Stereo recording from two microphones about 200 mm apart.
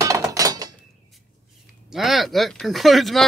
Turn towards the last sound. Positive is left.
turn(degrees=0)  # may be behind; listen again after turning